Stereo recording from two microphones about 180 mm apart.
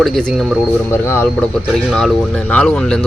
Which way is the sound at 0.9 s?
15° left (ahead or behind).